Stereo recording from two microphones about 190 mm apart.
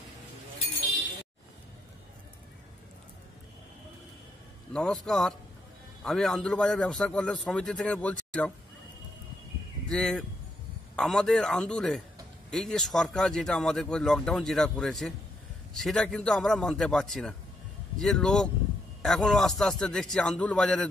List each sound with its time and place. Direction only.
4.7 s speech: 5° left (ahead or behind)
9.8 s speech: 5° left (ahead or behind)